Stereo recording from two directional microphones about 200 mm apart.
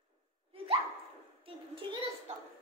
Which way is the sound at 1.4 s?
25° right (ahead or behind).